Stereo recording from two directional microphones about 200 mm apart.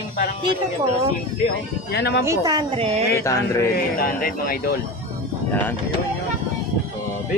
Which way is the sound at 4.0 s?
45° left (ahead or behind).